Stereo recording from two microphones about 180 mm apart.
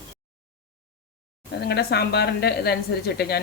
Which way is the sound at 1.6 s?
65° left (ahead or behind).